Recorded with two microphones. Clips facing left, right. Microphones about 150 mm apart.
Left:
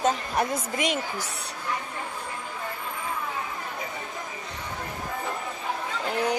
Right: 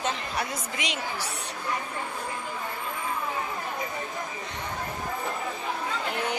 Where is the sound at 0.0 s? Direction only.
45° left (ahead or behind).